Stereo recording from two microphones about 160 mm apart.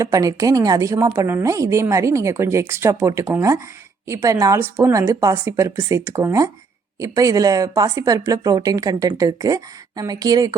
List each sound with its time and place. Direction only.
0.0 s speech: 20° right (ahead or behind)